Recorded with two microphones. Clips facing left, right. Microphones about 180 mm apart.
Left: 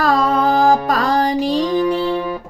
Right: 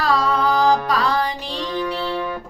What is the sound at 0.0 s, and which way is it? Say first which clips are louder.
Music: left 4 dB; 50° left (ahead or behind).